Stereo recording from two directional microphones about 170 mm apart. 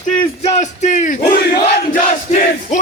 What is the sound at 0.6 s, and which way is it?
A man's voice, 45° left (ahead or behind).